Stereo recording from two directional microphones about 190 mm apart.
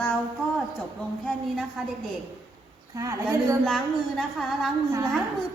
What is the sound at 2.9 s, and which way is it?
Speech, 15° right (ahead or behind).